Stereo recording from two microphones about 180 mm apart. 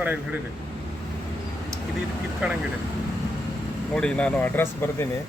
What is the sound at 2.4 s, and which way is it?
Speech, 5° right (ahead or behind).